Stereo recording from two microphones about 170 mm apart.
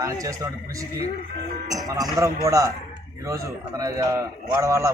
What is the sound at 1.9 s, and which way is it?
A man's voice, 20° right (ahead or behind).